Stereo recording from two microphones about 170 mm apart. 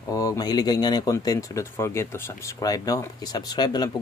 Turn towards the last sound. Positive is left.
turn(degrees=25)  # may be behind; listen again after turning